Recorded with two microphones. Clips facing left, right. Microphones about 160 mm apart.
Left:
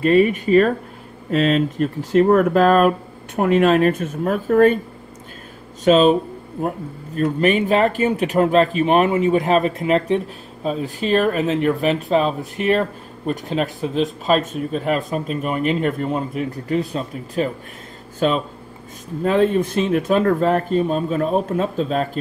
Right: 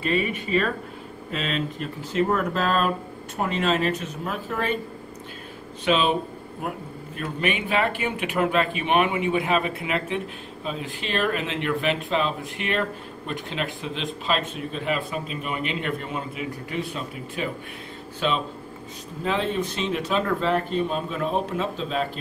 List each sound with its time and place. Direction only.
0.0 s speech: 45° left (ahead or behind)
5.9 s speech: 40° left (ahead or behind)
7.2 s speech: 40° left (ahead or behind)